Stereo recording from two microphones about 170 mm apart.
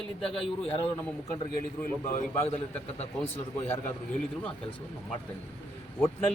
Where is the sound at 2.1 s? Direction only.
40° left (ahead or behind).